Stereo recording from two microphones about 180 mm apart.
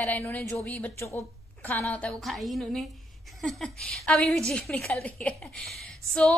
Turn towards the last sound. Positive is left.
turn(degrees=0)  # may be behind; listen again after turning